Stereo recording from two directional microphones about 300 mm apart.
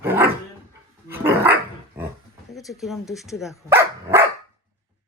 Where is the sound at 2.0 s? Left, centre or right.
Centre.